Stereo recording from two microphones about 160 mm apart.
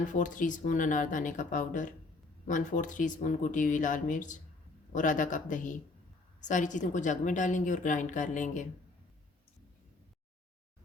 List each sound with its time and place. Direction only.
0.0 s a woman's voice: 55° left (ahead or behind)